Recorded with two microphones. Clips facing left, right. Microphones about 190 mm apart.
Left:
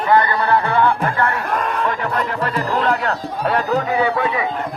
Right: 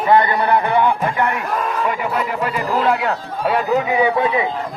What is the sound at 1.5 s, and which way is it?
A man's voice, 5° right (ahead or behind).